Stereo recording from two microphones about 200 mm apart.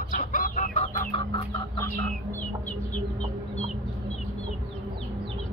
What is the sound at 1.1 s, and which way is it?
Chicken, 20° left (ahead or behind).